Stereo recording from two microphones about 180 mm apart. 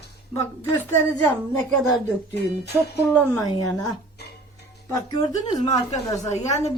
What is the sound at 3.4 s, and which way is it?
Speech, 25° left (ahead or behind).